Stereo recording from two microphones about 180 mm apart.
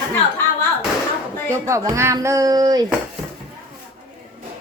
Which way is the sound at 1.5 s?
15° right (ahead or behind).